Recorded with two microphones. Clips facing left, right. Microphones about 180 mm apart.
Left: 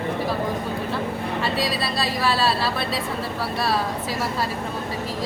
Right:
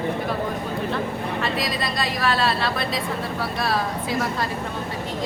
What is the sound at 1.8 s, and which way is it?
A woman's voice, 5° left (ahead or behind).